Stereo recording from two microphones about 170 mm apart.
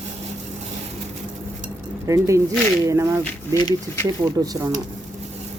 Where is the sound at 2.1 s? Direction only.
20° right (ahead or behind).